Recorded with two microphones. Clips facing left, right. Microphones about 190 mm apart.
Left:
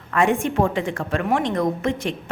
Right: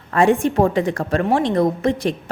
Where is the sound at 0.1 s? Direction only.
35° right (ahead or behind).